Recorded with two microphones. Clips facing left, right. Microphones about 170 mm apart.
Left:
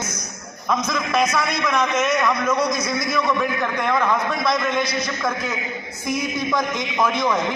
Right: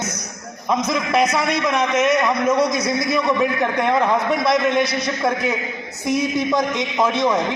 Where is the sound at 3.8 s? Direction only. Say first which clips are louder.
Right 3 dB; 30° right (ahead or behind).